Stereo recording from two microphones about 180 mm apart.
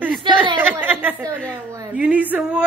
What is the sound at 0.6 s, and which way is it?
A woman's voice, 10° right (ahead or behind).